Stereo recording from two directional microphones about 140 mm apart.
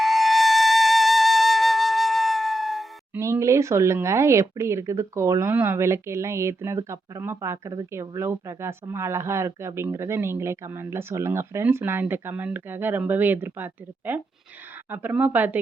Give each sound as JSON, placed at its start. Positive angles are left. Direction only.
{"t": 0.0, "sound": "flute", "side_deg": 0}
{"t": 3.2, "sound": "speech", "side_deg": -20}